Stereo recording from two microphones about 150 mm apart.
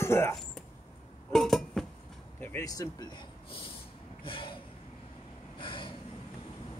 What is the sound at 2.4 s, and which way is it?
Speech, 20° left (ahead or behind).